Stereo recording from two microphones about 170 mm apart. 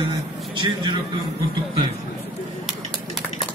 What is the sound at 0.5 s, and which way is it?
Speech, 30° right (ahead or behind).